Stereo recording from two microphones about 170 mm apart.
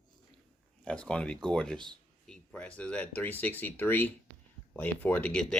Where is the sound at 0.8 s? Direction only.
5° left (ahead or behind).